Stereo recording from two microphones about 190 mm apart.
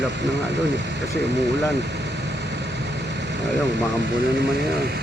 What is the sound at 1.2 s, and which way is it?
Speech, 65° right (ahead or behind).